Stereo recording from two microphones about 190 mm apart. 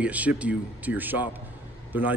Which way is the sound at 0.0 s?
5° right (ahead or behind).